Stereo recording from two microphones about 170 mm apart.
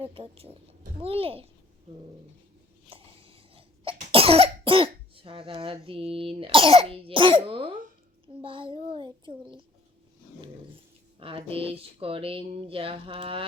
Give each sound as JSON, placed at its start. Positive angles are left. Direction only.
{"t": 0.0, "sound": "speech", "side_deg": -35}
{"t": 2.9, "sound": "cough", "side_deg": -35}
{"t": 8.4, "sound": "speech", "side_deg": -30}
{"t": 11.2, "sound": "speech", "side_deg": -30}